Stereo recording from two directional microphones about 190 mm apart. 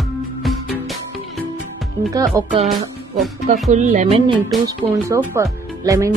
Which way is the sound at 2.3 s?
15° right (ahead or behind).